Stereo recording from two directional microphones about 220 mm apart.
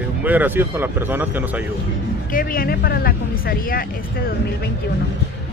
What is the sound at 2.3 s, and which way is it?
Speech, 40° left (ahead or behind).